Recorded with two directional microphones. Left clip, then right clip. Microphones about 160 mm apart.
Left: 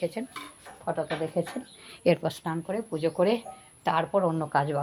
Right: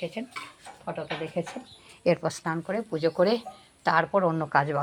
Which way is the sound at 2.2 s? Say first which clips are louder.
Right 1 dB; 15° left (ahead or behind).